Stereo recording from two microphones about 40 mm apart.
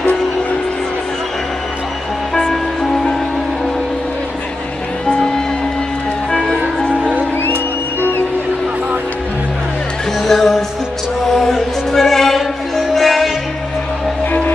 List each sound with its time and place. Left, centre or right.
2.5 s music: centre
5.0 s music: centre
6.8 s music: left
10.2 s music: centre